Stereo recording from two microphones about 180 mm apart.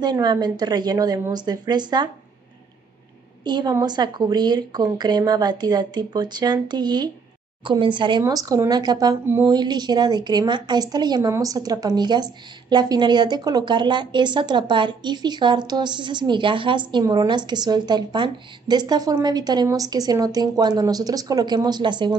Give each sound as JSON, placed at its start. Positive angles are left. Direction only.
{"t": 0.0, "sound": "a woman's voice", "side_deg": -25}
{"t": 3.4, "sound": "a woman's voice", "side_deg": -25}